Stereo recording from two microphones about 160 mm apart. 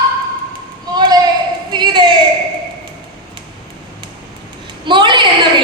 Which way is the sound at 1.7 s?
30° right (ahead or behind).